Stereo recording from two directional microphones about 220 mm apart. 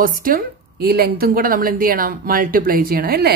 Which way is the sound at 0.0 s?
40° right (ahead or behind).